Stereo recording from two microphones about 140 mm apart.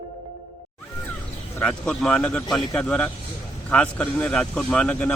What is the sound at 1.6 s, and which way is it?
Speech, 10° left (ahead or behind).